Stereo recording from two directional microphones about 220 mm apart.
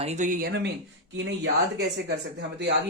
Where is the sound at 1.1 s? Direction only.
55° right (ahead or behind).